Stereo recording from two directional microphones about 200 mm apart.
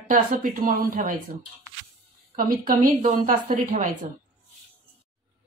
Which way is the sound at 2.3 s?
45° right (ahead or behind).